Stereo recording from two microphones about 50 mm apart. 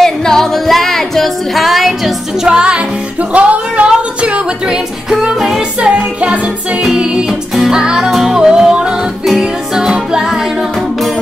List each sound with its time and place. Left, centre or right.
0.0 s music: centre
2.4 s music: centre
5.3 s music: centre
5.8 s music: right